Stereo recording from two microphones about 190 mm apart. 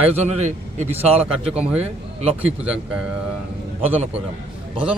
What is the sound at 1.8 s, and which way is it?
Speech, 35° right (ahead or behind).